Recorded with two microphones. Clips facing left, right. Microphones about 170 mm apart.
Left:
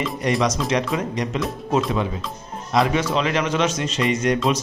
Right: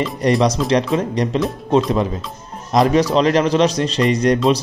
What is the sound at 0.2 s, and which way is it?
A man's voice, 35° right (ahead or behind).